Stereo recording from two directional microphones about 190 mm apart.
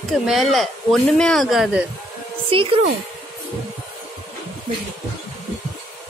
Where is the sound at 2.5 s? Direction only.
30° right (ahead or behind).